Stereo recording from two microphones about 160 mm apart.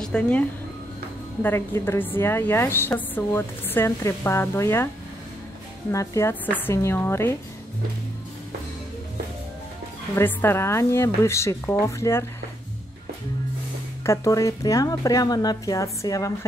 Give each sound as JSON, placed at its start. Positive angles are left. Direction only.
{"t": 0.0, "sound": "a woman's voice", "side_deg": 5}
{"t": 5.9, "sound": "a woman's voice", "side_deg": 20}
{"t": 10.1, "sound": "a woman's voice", "side_deg": 15}
{"t": 14.0, "sound": "a woman's voice", "side_deg": 20}